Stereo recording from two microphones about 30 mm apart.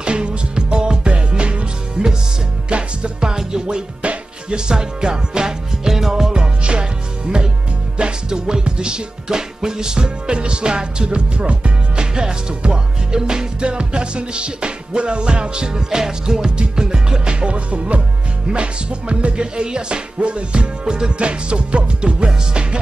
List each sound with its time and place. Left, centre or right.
0.0 s music: right
4.6 s music: right
12.2 s music: right
20.8 s music: right
21.2 s music: right